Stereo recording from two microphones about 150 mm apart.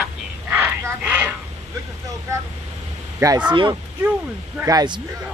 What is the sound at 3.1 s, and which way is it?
Speech, 20° right (ahead or behind).